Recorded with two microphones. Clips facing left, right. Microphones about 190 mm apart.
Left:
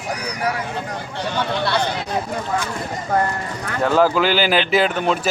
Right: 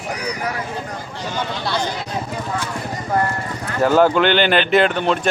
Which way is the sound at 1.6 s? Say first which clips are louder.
Even; 65° left (ahead or behind).